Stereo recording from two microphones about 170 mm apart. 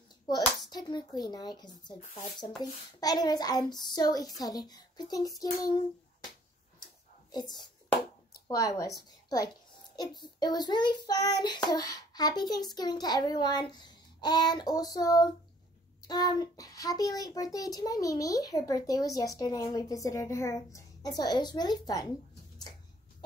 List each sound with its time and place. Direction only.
0.3 s a child's voice: 25° left (ahead or behind)
7.2 s a child's voice: 25° left (ahead or behind)